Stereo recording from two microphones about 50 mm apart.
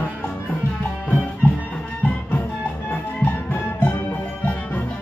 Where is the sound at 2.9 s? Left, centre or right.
Left.